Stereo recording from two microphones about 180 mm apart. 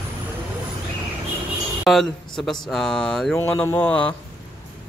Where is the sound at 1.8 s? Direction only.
Centre (ahead or behind).